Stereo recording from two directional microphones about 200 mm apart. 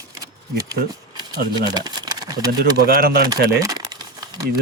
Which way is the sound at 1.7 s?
20° right (ahead or behind).